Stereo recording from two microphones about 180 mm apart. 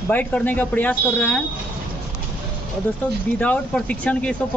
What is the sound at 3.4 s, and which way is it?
Speech, 10° left (ahead or behind).